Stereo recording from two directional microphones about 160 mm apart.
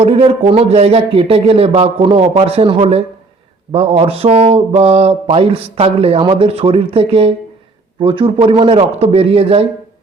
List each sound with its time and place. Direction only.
0.0 s speech: 35° right (ahead or behind)